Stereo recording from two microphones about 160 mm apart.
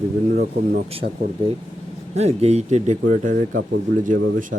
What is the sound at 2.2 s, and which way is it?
Speech, 40° right (ahead or behind).